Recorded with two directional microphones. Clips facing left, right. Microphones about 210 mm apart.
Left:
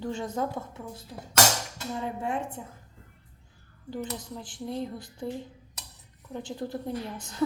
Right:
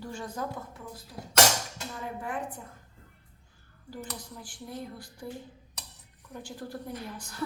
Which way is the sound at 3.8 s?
20° left (ahead or behind).